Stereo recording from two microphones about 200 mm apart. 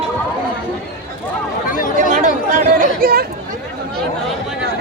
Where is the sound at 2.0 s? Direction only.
40° right (ahead or behind).